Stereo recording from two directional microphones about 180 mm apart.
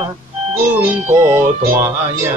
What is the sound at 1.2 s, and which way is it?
Music, 15° right (ahead or behind).